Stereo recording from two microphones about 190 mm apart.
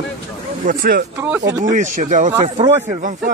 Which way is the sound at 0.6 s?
50° right (ahead or behind).